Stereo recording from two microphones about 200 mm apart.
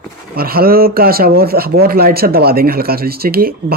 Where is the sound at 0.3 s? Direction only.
50° right (ahead or behind).